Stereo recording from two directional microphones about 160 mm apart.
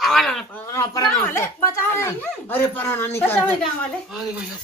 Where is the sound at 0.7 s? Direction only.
25° left (ahead or behind).